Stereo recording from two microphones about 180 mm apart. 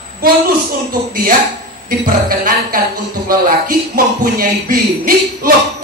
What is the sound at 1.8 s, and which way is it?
Speech, 55° right (ahead or behind).